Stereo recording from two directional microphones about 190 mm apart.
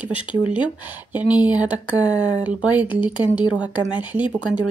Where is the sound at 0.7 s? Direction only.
10° right (ahead or behind).